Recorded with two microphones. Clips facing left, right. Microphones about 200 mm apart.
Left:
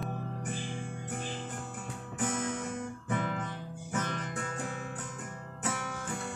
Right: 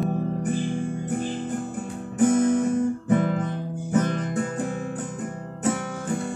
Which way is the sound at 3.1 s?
40° right (ahead or behind).